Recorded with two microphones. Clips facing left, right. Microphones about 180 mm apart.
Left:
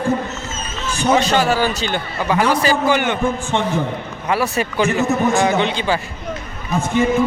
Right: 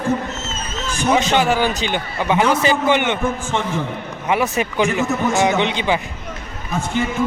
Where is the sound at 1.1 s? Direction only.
15° right (ahead or behind).